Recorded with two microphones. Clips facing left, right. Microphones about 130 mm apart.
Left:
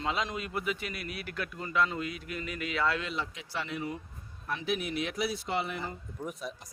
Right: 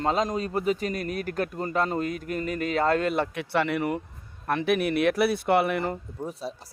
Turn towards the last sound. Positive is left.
turn(degrees=-30)  # may be behind; listen again after turning